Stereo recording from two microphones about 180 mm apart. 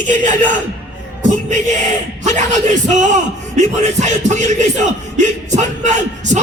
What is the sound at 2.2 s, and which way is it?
Music, 40° right (ahead or behind).